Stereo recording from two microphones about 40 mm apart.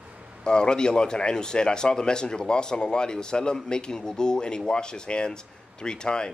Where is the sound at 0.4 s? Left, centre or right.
Left.